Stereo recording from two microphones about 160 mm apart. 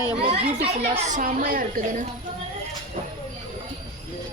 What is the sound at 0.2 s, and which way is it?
Speech, 40° right (ahead or behind).